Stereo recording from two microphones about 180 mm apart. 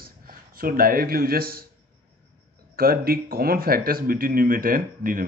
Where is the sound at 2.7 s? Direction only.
55° right (ahead or behind).